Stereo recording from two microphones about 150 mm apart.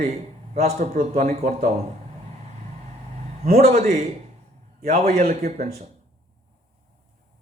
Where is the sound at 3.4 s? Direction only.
85° right; by 4.0 s 60° right (ahead or behind).